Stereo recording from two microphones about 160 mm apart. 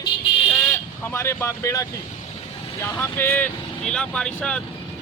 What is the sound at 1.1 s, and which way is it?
Speech, 15° left (ahead or behind).